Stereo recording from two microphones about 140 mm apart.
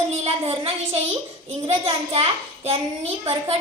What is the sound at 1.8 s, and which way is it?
A child's voice, 45° right (ahead or behind).